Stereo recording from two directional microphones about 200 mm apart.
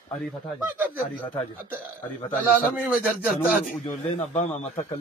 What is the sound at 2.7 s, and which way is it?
Speech, 5° right (ahead or behind).